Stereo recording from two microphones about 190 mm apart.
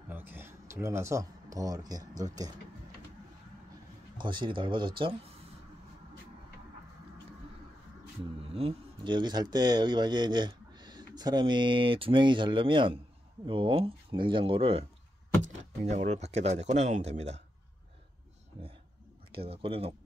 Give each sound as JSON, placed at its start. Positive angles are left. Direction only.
{"t": 0.1, "sound": "speech", "side_deg": -10}
{"t": 4.2, "sound": "speech", "side_deg": -25}
{"t": 8.5, "sound": "speech", "side_deg": -30}
{"t": 19.3, "sound": "speech", "side_deg": -30}